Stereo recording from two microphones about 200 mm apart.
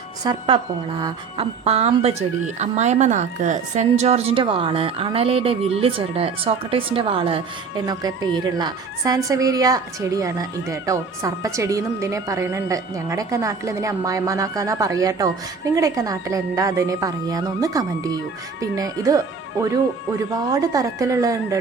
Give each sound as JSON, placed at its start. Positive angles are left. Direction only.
{"t": 0.3, "sound": "a woman's voice", "side_deg": -25}